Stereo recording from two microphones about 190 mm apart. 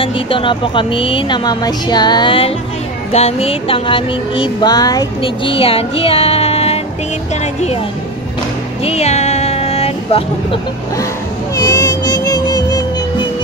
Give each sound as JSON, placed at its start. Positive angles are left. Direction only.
{"t": 0.0, "sound": "music", "side_deg": 25}
{"t": 8.8, "sound": "vehicle", "side_deg": 35}
{"t": 11.6, "sound": "music", "side_deg": 20}